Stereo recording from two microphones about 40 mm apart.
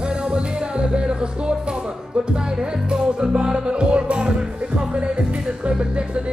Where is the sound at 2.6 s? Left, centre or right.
Centre.